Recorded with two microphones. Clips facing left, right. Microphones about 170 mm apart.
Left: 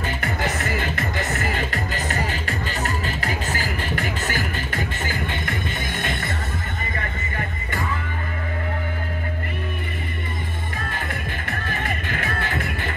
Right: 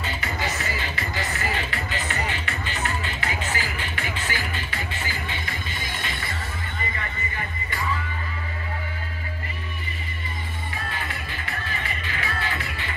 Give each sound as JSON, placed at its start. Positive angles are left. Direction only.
{"t": 0.0, "sound": "music", "side_deg": 55}
{"t": 10.9, "sound": "music", "side_deg": 50}